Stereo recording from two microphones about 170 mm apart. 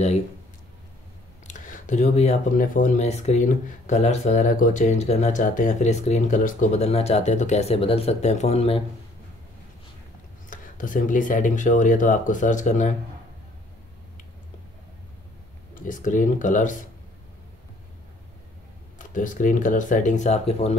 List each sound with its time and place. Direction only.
1.5 s speech: 45° left (ahead or behind)
10.5 s speech: 50° left (ahead or behind)
15.7 s speech: 50° left (ahead or behind)
18.9 s speech: 50° left (ahead or behind)